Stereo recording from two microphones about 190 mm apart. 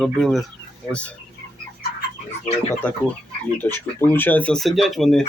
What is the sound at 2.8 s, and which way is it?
Speech, 10° left (ahead or behind).